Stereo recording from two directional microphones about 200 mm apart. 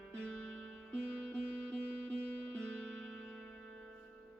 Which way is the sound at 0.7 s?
5° left (ahead or behind).